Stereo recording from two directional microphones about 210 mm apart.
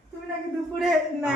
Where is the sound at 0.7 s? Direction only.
Centre (ahead or behind).